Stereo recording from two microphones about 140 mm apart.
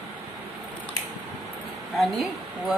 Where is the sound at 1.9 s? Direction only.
Centre (ahead or behind).